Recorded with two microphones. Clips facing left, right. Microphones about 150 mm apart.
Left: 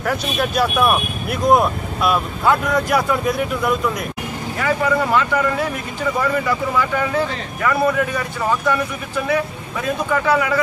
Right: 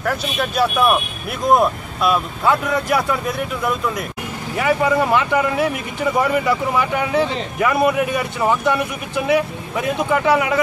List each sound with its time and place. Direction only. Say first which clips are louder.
0.0 s speech: left 1 dB; centre (ahead or behind)
4.6 s speech: right 2 dB; 20° right (ahead or behind)